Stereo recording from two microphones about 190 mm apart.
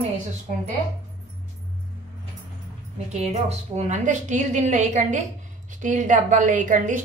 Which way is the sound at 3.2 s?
35° right (ahead or behind).